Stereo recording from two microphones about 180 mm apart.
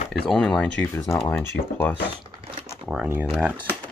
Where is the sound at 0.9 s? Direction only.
15° left (ahead or behind).